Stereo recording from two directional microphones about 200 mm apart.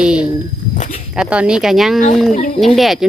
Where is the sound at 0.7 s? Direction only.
40° left (ahead or behind).